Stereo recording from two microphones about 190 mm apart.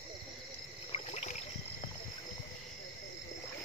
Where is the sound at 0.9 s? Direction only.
35° left (ahead or behind).